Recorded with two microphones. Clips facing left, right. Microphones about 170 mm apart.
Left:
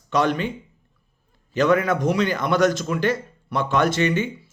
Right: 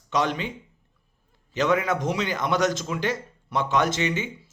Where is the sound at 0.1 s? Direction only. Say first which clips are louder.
Left 4 dB; 20° right (ahead or behind).